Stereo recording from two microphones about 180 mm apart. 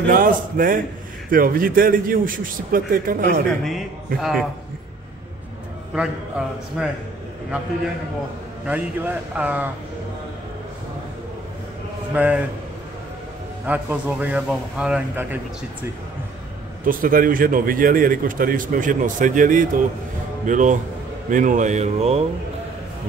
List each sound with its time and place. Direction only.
0.1 s a man's voice: 50° right (ahead or behind)
3.6 s a man's voice: centre (ahead or behind)
5.9 s a man's voice: 5° right (ahead or behind)
8.6 s speech: 10° right (ahead or behind)
12.1 s speech: 5° right (ahead or behind)
13.7 s speech: 10° right (ahead or behind)
16.8 s a man's voice: 50° right (ahead or behind)